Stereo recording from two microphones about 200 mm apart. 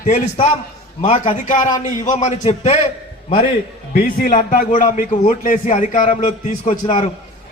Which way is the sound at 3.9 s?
40° left (ahead or behind).